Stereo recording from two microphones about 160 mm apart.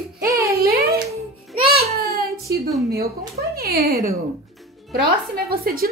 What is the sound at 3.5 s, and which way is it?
Speech, 75° right (ahead or behind).